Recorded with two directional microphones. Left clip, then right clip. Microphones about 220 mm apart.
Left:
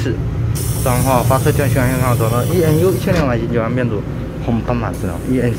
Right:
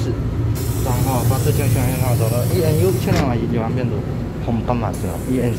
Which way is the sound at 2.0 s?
20° left (ahead or behind).